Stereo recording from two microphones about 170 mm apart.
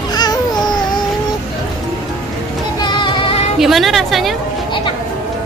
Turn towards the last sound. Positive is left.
turn(degrees=0)  # may be behind; listen again after turning